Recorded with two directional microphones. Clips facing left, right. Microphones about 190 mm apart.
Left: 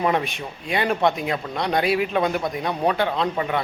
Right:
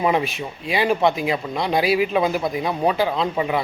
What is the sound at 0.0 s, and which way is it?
Speech, 5° right (ahead or behind).